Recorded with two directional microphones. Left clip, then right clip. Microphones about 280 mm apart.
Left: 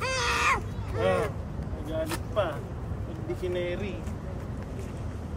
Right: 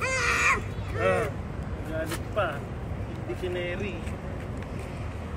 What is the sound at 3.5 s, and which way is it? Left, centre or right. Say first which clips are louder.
Speech: even; left.